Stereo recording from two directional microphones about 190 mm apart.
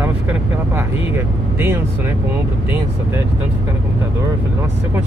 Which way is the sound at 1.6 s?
10° right (ahead or behind).